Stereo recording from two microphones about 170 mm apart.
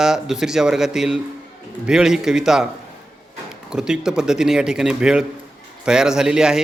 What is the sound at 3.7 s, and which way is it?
Speech, 5° right (ahead or behind).